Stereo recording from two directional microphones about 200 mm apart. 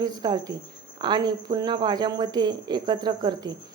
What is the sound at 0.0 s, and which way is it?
A woman's voice, 20° right (ahead or behind).